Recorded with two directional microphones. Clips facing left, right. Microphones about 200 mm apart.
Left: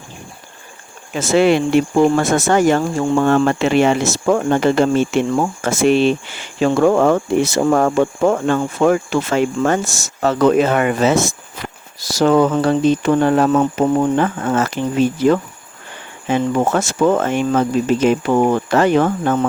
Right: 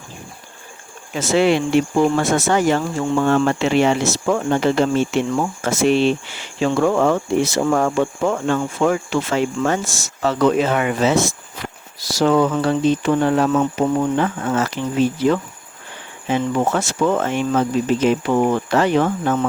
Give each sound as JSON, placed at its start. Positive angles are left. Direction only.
{"t": 1.1, "sound": "speech", "side_deg": 50}